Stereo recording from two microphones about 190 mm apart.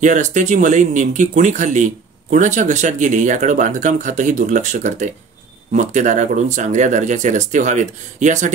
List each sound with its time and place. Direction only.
0.0 s speech: 40° right (ahead or behind)